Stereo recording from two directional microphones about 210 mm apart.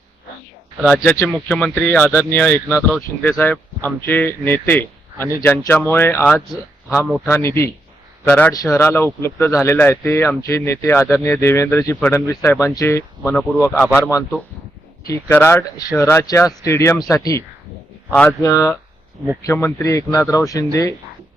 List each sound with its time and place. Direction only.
0.8 s speech: centre (ahead or behind)
1.0 s speech: 10° left (ahead or behind)
15.0 s speech: 10° left (ahead or behind)